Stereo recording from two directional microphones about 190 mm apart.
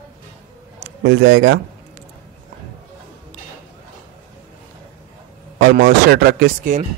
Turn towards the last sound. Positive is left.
turn(degrees=-45)  # may be behind; listen again after turning